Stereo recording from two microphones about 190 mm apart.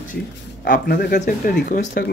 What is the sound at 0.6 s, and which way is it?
Speech, 55° left (ahead or behind).